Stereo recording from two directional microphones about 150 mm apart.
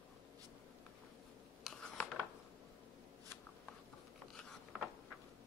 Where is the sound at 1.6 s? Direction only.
5° left (ahead or behind).